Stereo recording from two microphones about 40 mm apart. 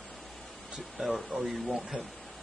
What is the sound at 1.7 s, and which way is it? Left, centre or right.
Speech, centre.